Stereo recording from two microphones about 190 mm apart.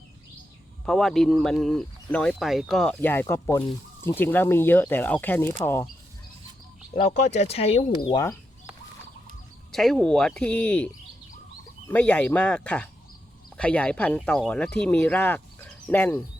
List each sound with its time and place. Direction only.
0.9 s speech: centre (ahead or behind)
6.9 s speech: 35° left (ahead or behind)
9.7 s speech: centre (ahead or behind)
11.9 s speech: 5° left (ahead or behind)